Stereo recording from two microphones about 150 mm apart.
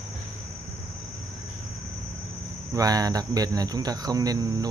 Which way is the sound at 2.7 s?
25° right (ahead or behind).